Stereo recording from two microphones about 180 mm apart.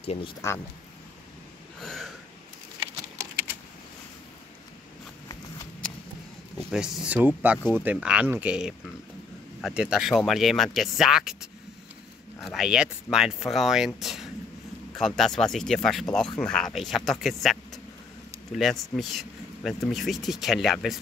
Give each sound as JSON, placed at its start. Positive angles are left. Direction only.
{"t": 0.4, "sound": "speech", "side_deg": 15}
{"t": 1.8, "sound": "a sound", "side_deg": 0}
{"t": 6.7, "sound": "speech", "side_deg": -5}
{"t": 12.4, "sound": "speech", "side_deg": 0}
{"t": 18.6, "sound": "speech", "side_deg": 0}